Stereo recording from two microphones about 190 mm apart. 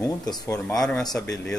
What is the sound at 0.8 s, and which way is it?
Speech, centre (ahead or behind).